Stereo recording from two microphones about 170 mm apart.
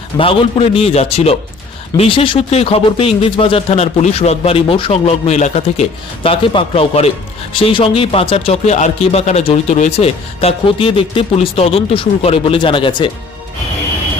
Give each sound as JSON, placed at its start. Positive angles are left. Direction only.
{"t": 0.2, "sound": "speech", "side_deg": 35}